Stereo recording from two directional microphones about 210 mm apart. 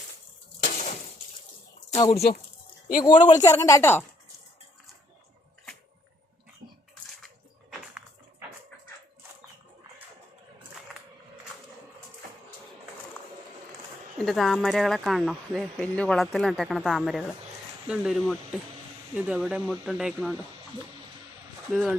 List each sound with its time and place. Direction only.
0.6 s a sound: 35° left (ahead or behind)
2.0 s a woman's voice: 20° left (ahead or behind)
14.2 s speech: centre (ahead or behind)
21.7 s speech: centre (ahead or behind)